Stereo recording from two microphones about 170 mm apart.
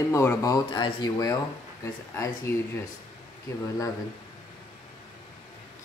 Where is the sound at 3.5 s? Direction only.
20° left (ahead or behind).